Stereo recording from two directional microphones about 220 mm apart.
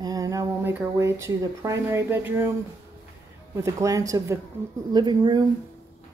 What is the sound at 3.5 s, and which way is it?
Speech, 15° right (ahead or behind).